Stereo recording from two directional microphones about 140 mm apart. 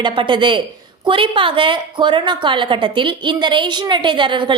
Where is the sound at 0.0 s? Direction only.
35° right (ahead or behind).